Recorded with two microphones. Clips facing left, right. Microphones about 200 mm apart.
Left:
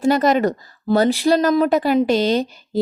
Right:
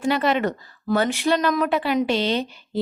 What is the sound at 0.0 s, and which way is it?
Speech, 40° left (ahead or behind).